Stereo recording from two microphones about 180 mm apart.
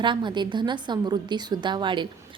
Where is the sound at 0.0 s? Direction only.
25° right (ahead or behind).